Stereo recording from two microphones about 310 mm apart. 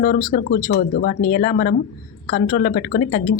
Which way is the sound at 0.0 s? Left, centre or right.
Left.